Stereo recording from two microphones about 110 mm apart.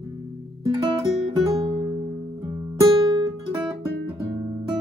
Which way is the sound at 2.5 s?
30° right (ahead or behind).